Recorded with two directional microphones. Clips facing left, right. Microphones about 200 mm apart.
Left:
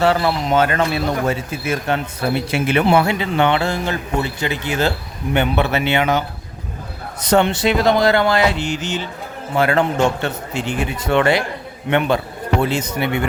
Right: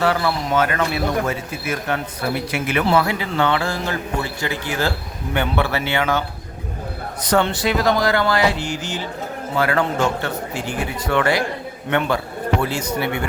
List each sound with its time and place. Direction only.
0.0 s a man's voice: 25° left (ahead or behind)